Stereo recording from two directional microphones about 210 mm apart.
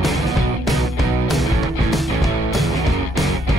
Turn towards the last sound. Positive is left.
turn(degrees=0)  # may be behind; listen again after turning